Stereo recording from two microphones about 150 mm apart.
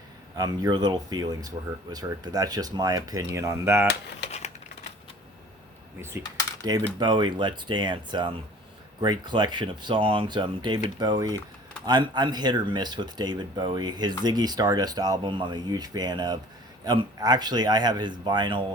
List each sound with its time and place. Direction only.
0.3 s speech: 25° right (ahead or behind)
4.3 s typing: 45° left (ahead or behind)
6.0 s speech: 15° right (ahead or behind)